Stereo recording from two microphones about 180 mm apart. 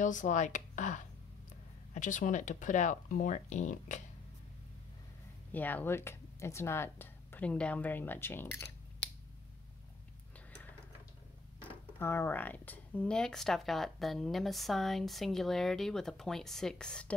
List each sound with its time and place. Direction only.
0.0 s speech: 45° left (ahead or behind)
5.5 s speech: 10° left (ahead or behind)
12.0 s speech: 15° left (ahead or behind)